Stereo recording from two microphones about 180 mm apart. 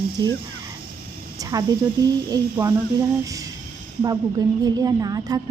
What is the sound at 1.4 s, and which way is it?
A woman's voice, 20° right (ahead or behind).